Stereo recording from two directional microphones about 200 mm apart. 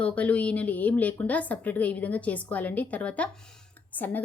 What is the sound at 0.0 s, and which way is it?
Speech, 5° left (ahead or behind).